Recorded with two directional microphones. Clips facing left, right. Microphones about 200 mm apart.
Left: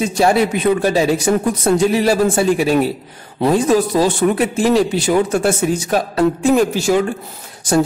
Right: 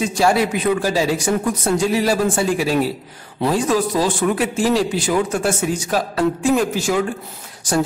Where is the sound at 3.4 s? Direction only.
25° left (ahead or behind).